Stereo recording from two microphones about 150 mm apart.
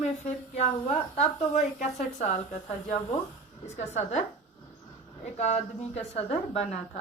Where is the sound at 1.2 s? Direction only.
50° left (ahead or behind).